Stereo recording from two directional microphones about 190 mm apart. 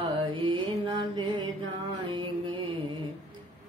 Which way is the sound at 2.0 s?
25° right (ahead or behind).